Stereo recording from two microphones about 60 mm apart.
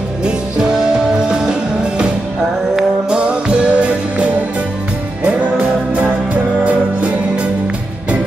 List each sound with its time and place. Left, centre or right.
0.2 s music: centre